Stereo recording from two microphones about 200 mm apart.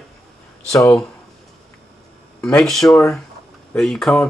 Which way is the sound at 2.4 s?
5° left (ahead or behind).